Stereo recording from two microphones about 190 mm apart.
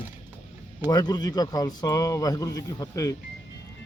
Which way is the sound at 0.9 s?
20° left (ahead or behind).